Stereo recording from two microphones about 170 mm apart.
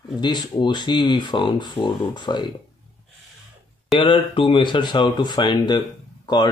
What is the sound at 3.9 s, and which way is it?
Speech, 30° left (ahead or behind).